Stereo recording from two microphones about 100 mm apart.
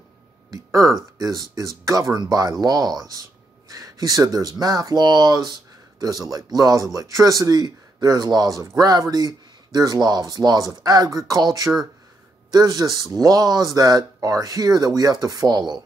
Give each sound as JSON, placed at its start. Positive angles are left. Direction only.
{"t": 0.5, "sound": "speech", "side_deg": -30}
{"t": 12.5, "sound": "speech", "side_deg": -40}